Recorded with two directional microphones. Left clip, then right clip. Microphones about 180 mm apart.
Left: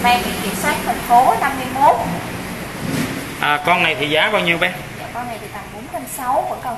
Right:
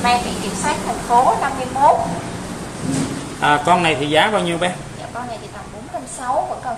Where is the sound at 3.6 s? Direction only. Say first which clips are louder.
Even; 25° right (ahead or behind).